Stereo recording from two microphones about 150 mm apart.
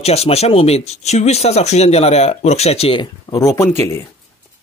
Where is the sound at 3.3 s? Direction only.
20° left (ahead or behind).